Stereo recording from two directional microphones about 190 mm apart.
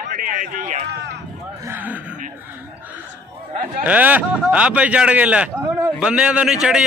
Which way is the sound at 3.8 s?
10° right (ahead or behind).